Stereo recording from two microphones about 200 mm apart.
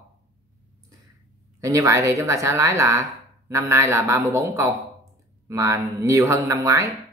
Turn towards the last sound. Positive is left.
turn(degrees=-15)  # may be behind; listen again after turning